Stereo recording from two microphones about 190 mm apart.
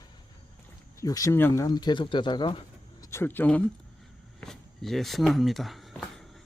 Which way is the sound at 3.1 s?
10° left (ahead or behind).